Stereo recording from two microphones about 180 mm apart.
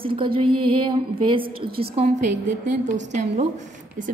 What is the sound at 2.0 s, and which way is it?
A woman's voice, 40° right (ahead or behind).